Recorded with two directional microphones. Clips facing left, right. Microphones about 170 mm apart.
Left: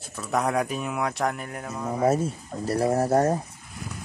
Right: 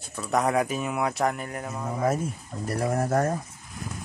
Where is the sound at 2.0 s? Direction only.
30° left (ahead or behind).